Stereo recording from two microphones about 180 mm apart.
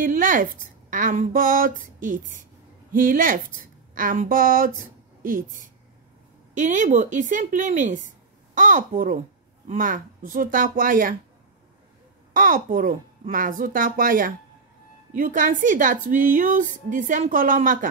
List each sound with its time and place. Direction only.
0.0 s a woman's voice: 50° right (ahead or behind)
12.4 s a woman's voice: 50° right (ahead or behind)